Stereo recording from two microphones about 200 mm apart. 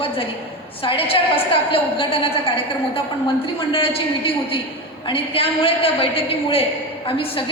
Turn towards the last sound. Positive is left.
turn(degrees=25)  # may be behind; listen again after turning